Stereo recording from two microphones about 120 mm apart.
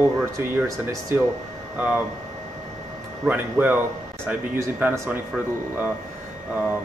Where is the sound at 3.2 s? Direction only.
15° right (ahead or behind).